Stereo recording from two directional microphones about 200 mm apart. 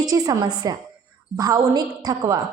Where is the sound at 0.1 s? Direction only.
15° right (ahead or behind).